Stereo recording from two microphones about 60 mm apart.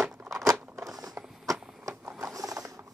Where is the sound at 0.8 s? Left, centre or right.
Right.